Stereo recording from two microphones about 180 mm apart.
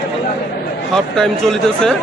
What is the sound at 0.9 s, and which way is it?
Speech, 5° left (ahead or behind).